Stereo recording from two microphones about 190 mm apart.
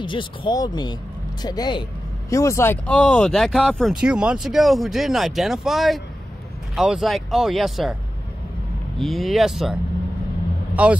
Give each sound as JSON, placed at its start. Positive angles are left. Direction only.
{"t": 0.0, "sound": "speech", "side_deg": 25}
{"t": 8.9, "sound": "speech", "side_deg": 0}
{"t": 10.7, "sound": "vehicle", "side_deg": -5}